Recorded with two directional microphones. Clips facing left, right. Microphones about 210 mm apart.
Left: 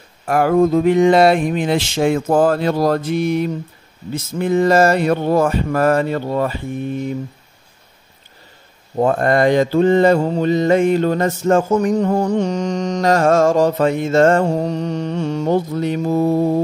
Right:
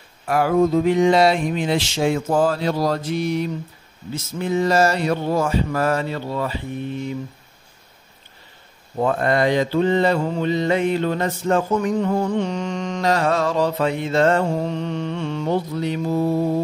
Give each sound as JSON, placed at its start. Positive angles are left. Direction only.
{"t": 0.3, "sound": "a sound", "side_deg": 50}
{"t": 4.1, "sound": "mantra", "side_deg": 55}
{"t": 8.9, "sound": "mantra", "side_deg": 45}